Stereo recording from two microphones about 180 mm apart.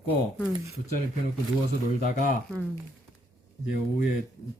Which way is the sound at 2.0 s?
45° left (ahead or behind).